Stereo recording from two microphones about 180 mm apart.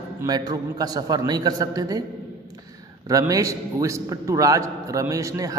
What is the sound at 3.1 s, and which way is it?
A man's voice, 20° right (ahead or behind).